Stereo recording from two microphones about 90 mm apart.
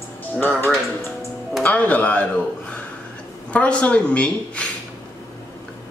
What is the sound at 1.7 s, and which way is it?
Speech, 15° left (ahead or behind).